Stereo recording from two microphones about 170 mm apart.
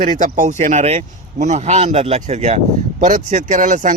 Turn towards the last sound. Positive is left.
turn(degrees=-50)  # may be behind; listen again after turning